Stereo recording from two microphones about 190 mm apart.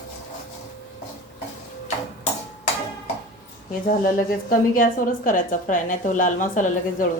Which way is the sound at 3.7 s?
50° left (ahead or behind).